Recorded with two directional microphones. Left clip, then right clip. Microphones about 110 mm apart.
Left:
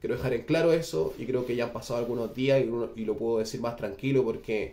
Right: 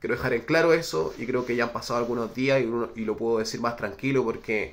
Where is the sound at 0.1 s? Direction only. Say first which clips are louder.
Right 4 dB; 15° left (ahead or behind).